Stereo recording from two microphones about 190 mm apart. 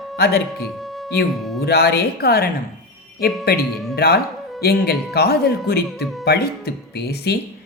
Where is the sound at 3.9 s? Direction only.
55° left (ahead or behind).